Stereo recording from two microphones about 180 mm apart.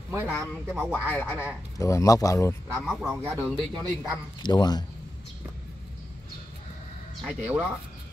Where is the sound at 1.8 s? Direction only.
15° left (ahead or behind).